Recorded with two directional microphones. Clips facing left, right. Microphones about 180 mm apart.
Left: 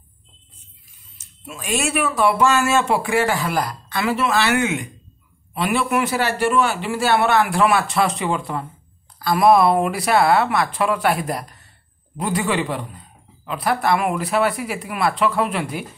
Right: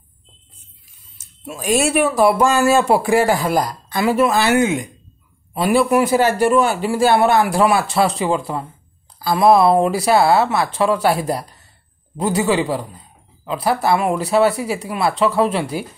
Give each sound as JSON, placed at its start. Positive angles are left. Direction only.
{"t": 1.1, "sound": "speech", "side_deg": -40}